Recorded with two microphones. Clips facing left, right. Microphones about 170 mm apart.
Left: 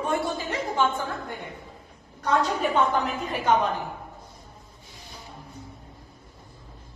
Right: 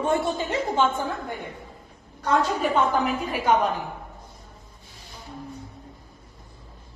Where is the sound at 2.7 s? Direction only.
10° right (ahead or behind).